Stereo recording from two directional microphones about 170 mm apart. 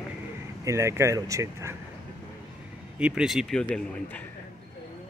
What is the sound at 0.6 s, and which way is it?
Speech, 15° right (ahead or behind).